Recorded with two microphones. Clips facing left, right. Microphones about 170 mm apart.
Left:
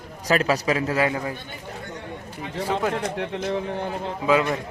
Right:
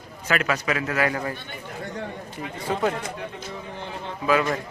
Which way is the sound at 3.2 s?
70° left (ahead or behind).